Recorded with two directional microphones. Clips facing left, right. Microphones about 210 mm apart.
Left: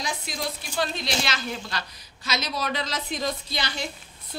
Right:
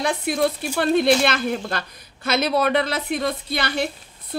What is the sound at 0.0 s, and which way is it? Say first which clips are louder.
Speech: right 11 dB; 60° right (ahead or behind).